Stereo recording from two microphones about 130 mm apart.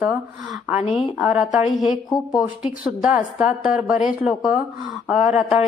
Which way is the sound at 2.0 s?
30° left (ahead or behind).